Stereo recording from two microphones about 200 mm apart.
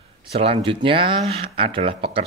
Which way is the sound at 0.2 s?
30° right (ahead or behind).